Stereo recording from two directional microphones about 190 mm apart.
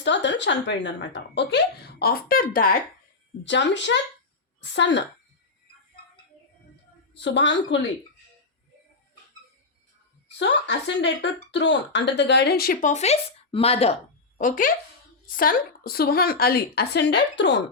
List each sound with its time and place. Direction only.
0.0 s speech: 70° left (ahead or behind); by 2.7 s 50° left (ahead or behind)
3.4 s a woman's voice: 70° left (ahead or behind)
7.1 s a woman's voice: 70° left (ahead or behind)
10.3 s speech: 65° left (ahead or behind)